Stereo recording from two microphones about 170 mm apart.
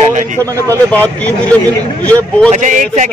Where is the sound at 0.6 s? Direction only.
10° left (ahead or behind).